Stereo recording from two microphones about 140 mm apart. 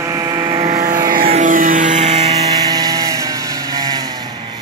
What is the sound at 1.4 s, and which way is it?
Music, 70° right (ahead or behind).